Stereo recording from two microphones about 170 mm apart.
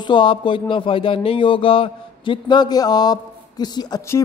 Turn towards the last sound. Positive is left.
turn(degrees=20)  # may be behind; listen again after turning